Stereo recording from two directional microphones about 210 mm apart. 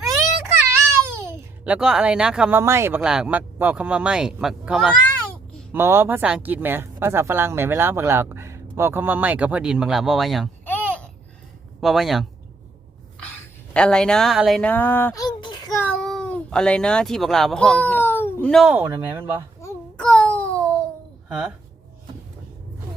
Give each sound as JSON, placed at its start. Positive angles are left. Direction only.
{"t": 1.2, "sound": "speech", "side_deg": -10}
{"t": 13.7, "sound": "speech", "side_deg": 5}
{"t": 15.4, "sound": "a sound", "side_deg": 20}
{"t": 18.9, "sound": "speech", "side_deg": -10}
{"t": 19.2, "sound": "speech", "side_deg": -20}
{"t": 19.6, "sound": "a sound", "side_deg": 5}
{"t": 21.2, "sound": "speech", "side_deg": -5}